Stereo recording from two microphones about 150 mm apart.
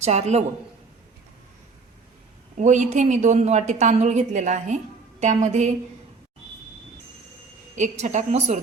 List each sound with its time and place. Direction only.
0.0 s a woman's voice: 45° right (ahead or behind)
2.6 s a woman's voice: 55° right (ahead or behind)
7.8 s a woman's voice: 55° right (ahead or behind)